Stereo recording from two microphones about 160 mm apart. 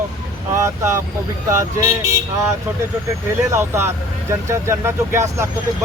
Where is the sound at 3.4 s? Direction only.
15° right (ahead or behind).